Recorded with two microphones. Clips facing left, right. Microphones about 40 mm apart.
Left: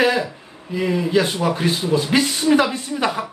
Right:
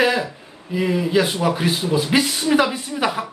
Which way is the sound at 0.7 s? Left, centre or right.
Centre.